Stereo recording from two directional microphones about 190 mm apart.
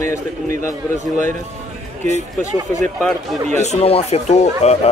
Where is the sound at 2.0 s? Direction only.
35° right (ahead or behind).